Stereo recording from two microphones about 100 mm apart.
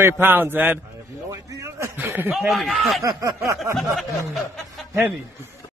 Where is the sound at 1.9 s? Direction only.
25° right (ahead or behind).